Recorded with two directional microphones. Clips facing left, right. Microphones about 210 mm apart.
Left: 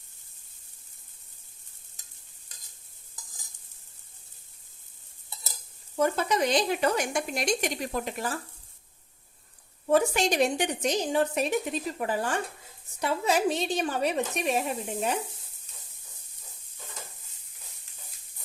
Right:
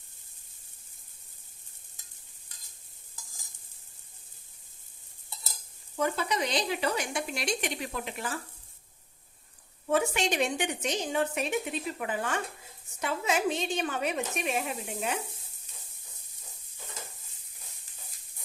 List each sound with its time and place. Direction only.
6.0 s speech: 45° left (ahead or behind)
9.9 s a woman's voice: 40° left (ahead or behind)